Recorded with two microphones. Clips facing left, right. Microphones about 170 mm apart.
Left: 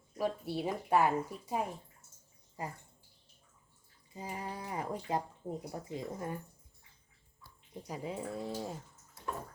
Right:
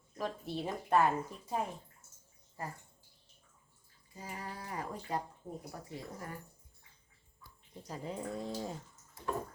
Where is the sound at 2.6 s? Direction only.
15° left (ahead or behind).